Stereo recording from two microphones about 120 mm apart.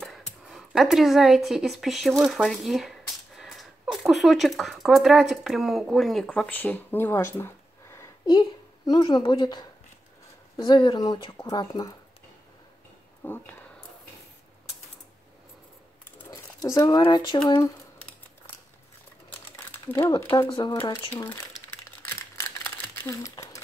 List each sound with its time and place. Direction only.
0.0 s speech: centre (ahead or behind); by 8.1 s 20° left (ahead or behind)
8.3 s a woman's voice: 35° left (ahead or behind)
13.2 s speech: 15° left (ahead or behind)
16.6 s speech: 25° left (ahead or behind)
16.9 s speech: 40° left (ahead or behind)
20.1 s speech: 30° left (ahead or behind)
20.4 s speech: 40° left (ahead or behind)
21.1 s speech: 15° left (ahead or behind)
22.0 s crumpling: 20° left (ahead or behind)